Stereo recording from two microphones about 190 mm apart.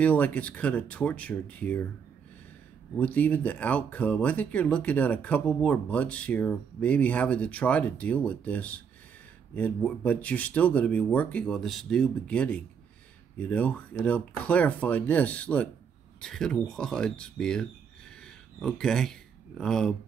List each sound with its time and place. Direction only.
0.0 s speech: 10° left (ahead or behind)
3.0 s speech: 10° left (ahead or behind)
18.2 s a sound: 5° left (ahead or behind)